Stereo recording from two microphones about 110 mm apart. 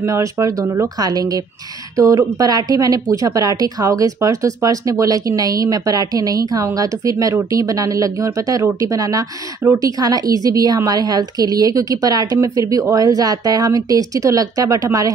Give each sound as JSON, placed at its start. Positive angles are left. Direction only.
{"t": 0.0, "sound": "a woman's voice", "side_deg": -30}